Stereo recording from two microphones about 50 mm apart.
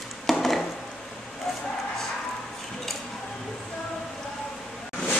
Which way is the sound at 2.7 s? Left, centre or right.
Centre.